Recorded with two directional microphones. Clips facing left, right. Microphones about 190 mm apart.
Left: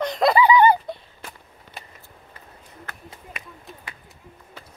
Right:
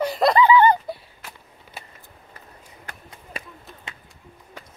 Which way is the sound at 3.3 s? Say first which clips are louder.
Right 7 dB; 35° right (ahead or behind).